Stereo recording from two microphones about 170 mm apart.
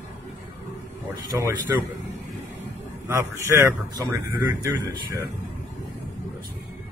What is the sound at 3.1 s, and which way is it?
A man's voice, 20° right (ahead or behind).